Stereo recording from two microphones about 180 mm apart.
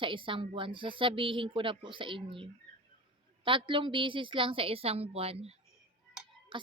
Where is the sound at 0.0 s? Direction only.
30° right (ahead or behind).